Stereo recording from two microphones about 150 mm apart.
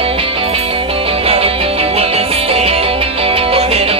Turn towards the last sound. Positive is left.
turn(degrees=-40)  # may be behind; listen again after turning